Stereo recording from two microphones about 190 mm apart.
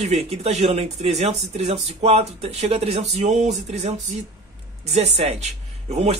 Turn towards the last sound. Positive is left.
turn(degrees=-35)  # may be behind; listen again after turning